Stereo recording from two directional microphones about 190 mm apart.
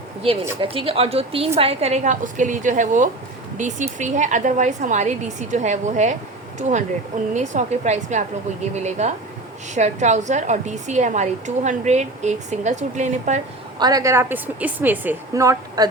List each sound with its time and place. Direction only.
0.2 s a woman's voice: 30° right (ahead or behind)
13.7 s a woman's voice: 20° right (ahead or behind)